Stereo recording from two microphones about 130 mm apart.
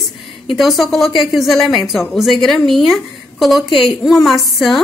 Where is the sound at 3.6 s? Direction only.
40° left (ahead or behind).